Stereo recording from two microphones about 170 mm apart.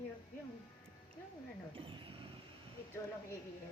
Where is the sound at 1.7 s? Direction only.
30° right (ahead or behind).